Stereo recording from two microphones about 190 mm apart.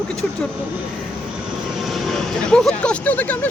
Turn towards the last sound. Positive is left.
turn(degrees=10)  # may be behind; listen again after turning